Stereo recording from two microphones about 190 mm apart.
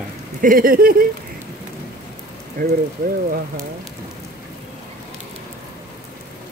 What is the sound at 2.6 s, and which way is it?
Speech, 55° right (ahead or behind).